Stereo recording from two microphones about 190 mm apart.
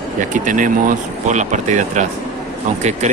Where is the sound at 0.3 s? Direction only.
45° right (ahead or behind).